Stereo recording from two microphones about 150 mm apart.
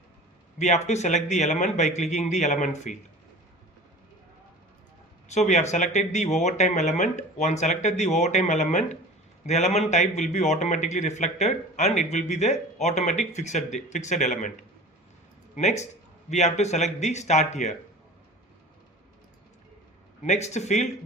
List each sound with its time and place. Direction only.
0.6 s a man's voice: 50° left (ahead or behind)
5.3 s a man's voice: 50° left (ahead or behind)
20.2 s a man's voice: 50° left (ahead or behind)